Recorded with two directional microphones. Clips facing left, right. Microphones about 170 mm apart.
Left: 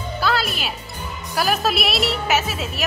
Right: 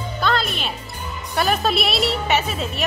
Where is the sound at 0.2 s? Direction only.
5° left (ahead or behind).